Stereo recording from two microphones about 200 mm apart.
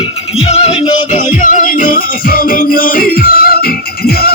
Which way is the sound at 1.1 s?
40° left (ahead or behind).